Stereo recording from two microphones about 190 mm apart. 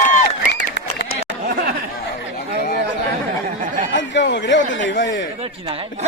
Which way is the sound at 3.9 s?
70° left (ahead or behind).